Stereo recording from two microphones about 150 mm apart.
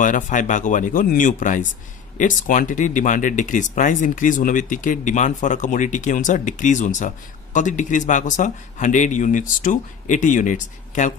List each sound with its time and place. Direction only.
0.0 s speech: 60° left (ahead or behind)